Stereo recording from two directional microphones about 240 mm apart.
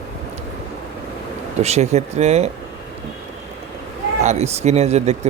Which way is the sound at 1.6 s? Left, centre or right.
Right.